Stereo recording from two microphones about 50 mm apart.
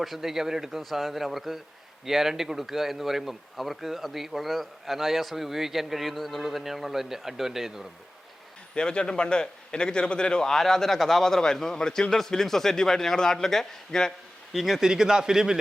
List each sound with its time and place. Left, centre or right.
0.0 s a man's voice: centre
8.7 s speech: centre
14.5 s a man's voice: centre
14.8 s a man's voice: centre